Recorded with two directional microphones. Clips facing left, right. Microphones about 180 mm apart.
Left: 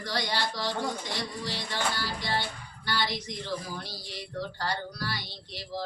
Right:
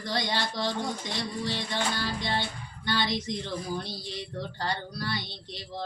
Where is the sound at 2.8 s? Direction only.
20° right (ahead or behind).